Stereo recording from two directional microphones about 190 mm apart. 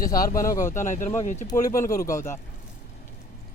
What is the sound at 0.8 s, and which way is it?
Speech, 40° left (ahead or behind).